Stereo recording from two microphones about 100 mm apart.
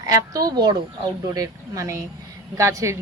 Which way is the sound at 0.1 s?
40° right (ahead or behind).